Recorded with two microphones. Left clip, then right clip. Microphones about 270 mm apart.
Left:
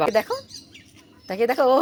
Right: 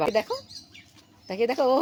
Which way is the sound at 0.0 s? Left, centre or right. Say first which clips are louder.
Left 4 dB; centre.